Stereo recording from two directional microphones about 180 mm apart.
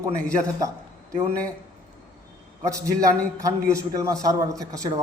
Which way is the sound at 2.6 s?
15° right (ahead or behind).